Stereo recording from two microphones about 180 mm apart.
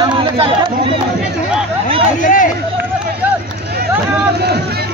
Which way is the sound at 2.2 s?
45° left (ahead or behind).